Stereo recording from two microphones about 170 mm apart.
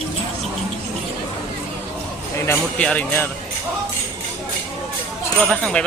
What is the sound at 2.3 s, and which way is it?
Speech, 15° left (ahead or behind).